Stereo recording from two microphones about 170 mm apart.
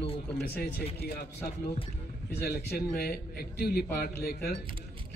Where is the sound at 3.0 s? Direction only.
65° left (ahead or behind).